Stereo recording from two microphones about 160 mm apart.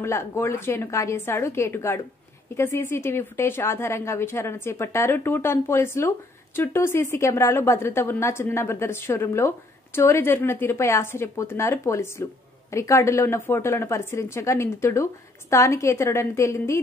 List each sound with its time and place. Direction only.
0.0 s a woman's voice: 15° left (ahead or behind)